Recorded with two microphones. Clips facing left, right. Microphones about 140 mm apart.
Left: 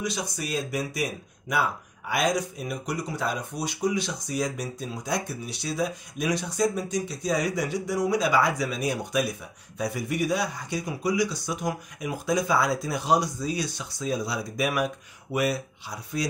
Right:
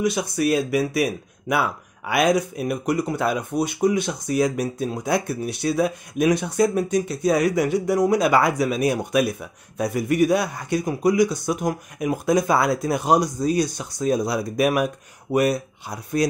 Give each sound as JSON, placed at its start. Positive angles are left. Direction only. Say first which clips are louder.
{"t": 0.0, "sound": "speech", "louder": "right 10 dB", "side_deg": -60}